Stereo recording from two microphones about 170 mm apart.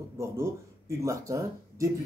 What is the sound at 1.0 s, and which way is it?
Speech, 20° right (ahead or behind).